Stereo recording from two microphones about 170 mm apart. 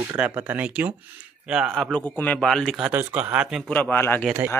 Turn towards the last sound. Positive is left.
turn(degrees=10)  # may be behind; listen again after turning